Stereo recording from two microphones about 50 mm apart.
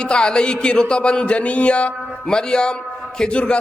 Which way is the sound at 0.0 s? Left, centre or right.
Centre.